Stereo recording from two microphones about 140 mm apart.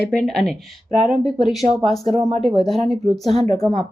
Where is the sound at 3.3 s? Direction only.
50° right (ahead or behind).